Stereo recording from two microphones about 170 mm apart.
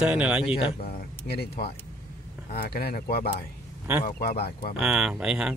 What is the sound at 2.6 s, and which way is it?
Speech, 65° left (ahead or behind).